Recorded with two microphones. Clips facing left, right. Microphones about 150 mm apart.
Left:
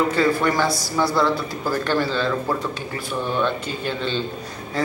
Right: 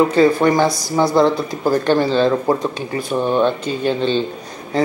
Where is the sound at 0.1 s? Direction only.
25° right (ahead or behind).